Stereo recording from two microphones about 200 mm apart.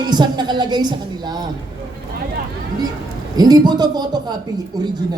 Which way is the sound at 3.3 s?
20° right (ahead or behind).